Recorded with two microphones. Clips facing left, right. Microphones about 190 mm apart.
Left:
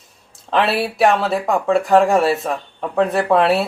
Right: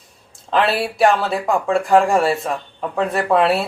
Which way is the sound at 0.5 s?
Centre (ahead or behind).